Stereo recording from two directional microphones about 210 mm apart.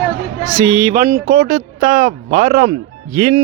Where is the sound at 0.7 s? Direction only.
10° right (ahead or behind).